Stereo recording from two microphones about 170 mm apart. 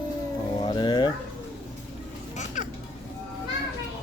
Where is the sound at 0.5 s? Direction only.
25° left (ahead or behind).